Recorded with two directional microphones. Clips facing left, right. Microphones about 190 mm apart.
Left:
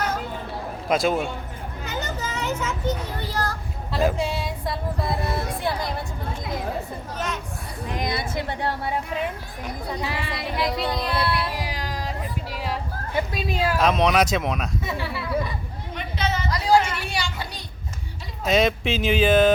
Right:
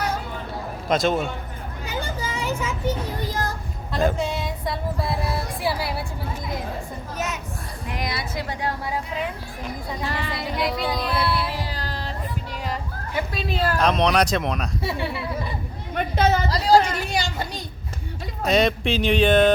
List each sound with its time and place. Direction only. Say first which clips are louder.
0.9 s a man's voice: even; 10° left (ahead or behind)
1.8 s a sound: right 1 dB; 10° right (ahead or behind)
3.9 s music: even; centre (ahead or behind)
10.0 s child singing: right 1 dB; centre (ahead or behind)
11.6 s music: left 1 dB; 15° left (ahead or behind)
13.3 s child singing: right 2 dB; 10° left (ahead or behind)
14.8 s a child's voice: right 2 dB; 30° right (ahead or behind)
16.0 s a sound: right 7 dB; 45° right (ahead or behind)
18.4 s child singing: even; centre (ahead or behind)